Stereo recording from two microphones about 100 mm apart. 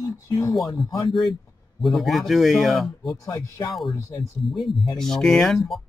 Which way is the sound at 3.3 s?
30° left (ahead or behind).